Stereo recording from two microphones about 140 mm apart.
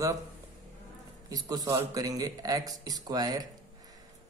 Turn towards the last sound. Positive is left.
turn(degrees=-25)  # may be behind; listen again after turning